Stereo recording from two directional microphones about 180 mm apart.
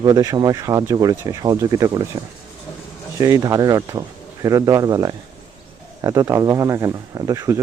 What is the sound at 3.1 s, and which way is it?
Speech, 20° right (ahead or behind).